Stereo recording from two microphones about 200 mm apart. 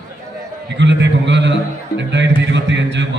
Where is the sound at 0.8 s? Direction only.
60° right (ahead or behind).